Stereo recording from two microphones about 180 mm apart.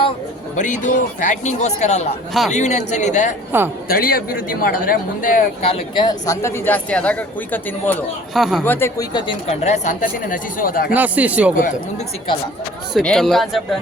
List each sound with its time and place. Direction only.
0.5 s a woman's voice: 45° left (ahead or behind)
3.5 s speech: 10° right (ahead or behind)
3.8 s a woman's voice: 55° left (ahead or behind)
5.6 s speech: 35° left (ahead or behind)
6.1 s speech: 20° left (ahead or behind)
8.3 s speech: centre (ahead or behind)
8.6 s speech: 10° left (ahead or behind)
9.1 s a woman's voice: 30° left (ahead or behind); by 10.8 s 50° left (ahead or behind)
10.9 s speech: 10° right (ahead or behind)
12.9 s speech: 5° left (ahead or behind)